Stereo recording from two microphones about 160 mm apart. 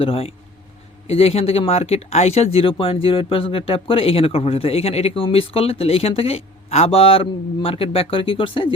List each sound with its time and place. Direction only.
0.0 s speech: 40° left (ahead or behind)